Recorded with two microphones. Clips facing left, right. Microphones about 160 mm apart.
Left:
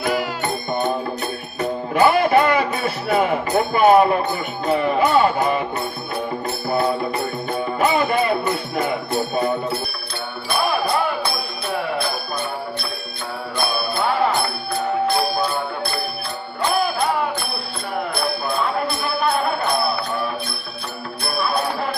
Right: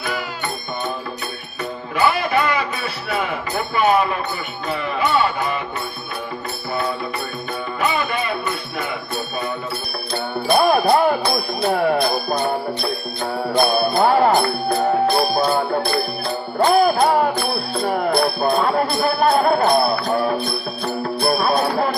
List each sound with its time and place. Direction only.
0.4 s music: 35° left (ahead or behind)
2.0 s music: 45° left (ahead or behind)
7.8 s music: 40° left (ahead or behind)
8.8 s jingle bell: 30° left (ahead or behind)
10.6 s music: 45° right (ahead or behind)
13.5 s music: 45° right (ahead or behind)
15.4 s music: 40° right (ahead or behind)
17.8 s jingle bell: 45° right (ahead or behind)
21.2 s music: 45° right (ahead or behind)